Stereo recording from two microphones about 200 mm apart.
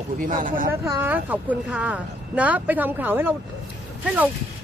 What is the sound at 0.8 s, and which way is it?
Speech, 15° right (ahead or behind).